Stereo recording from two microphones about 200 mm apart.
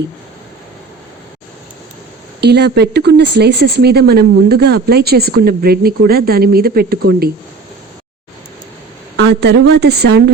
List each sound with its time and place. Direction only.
2.4 s speech: 55° right (ahead or behind)
9.1 s a woman's voice: 60° right (ahead or behind)